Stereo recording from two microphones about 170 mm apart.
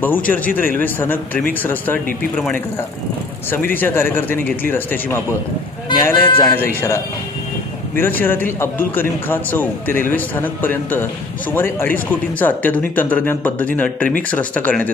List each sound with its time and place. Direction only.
0.0 s a man's voice: 10° left (ahead or behind)
7.9 s a man's voice: 10° left (ahead or behind)